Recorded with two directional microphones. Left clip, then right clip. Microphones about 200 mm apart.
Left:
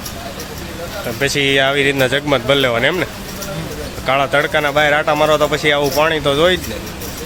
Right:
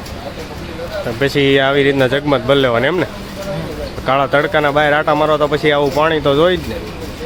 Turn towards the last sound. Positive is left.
turn(degrees=-10)  # may be behind; listen again after turning